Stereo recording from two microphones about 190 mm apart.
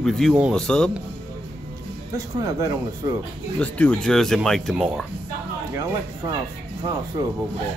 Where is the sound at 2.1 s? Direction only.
15° right (ahead or behind).